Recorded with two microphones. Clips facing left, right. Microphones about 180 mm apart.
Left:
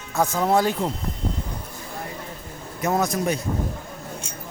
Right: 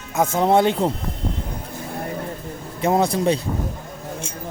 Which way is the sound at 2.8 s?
30° right (ahead or behind).